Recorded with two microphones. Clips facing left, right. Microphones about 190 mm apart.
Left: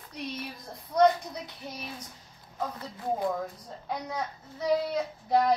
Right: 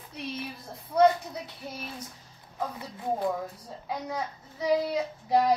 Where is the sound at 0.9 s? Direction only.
5° right (ahead or behind).